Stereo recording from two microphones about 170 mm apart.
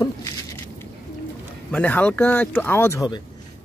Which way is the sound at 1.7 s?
10° left (ahead or behind).